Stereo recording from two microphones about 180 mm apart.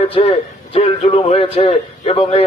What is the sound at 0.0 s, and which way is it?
A man's voice, 35° left (ahead or behind).